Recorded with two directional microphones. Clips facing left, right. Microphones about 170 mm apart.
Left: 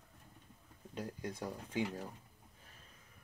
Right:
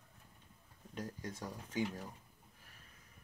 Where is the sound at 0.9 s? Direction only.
20° left (ahead or behind).